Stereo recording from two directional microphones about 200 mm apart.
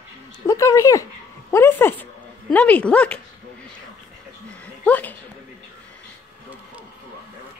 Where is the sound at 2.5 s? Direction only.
5° left (ahead or behind).